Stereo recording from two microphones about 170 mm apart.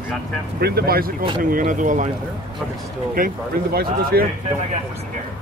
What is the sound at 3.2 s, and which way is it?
A man's voice, 55° right (ahead or behind).